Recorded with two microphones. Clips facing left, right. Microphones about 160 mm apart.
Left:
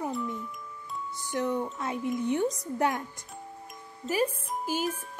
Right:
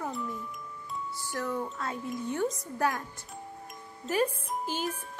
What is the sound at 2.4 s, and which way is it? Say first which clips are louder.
Speech: left 2 dB; centre (ahead or behind).